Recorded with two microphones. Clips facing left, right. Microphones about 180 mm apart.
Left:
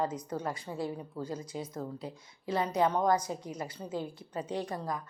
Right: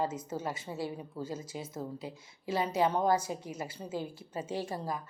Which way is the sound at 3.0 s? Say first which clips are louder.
Even; 30° right (ahead or behind).